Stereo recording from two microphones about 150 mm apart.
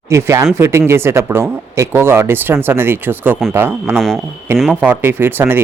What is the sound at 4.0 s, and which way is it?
Speech, centre (ahead or behind).